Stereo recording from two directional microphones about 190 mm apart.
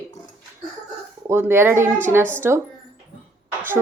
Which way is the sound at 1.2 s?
10° right (ahead or behind).